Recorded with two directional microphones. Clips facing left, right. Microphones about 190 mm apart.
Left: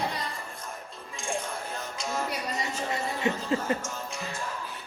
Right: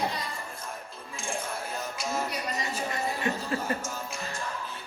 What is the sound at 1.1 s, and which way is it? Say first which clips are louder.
Music: left 1 dB; centre (ahead or behind).